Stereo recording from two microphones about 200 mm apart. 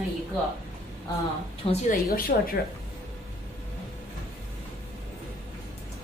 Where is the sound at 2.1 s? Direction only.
45° left (ahead or behind).